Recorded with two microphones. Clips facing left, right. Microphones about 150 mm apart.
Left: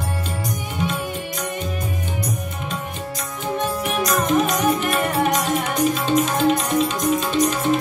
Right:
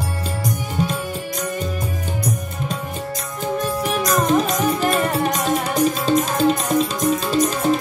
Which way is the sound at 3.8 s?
35° right (ahead or behind).